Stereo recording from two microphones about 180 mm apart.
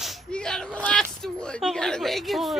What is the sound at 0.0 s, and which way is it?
Speech, 5° left (ahead or behind).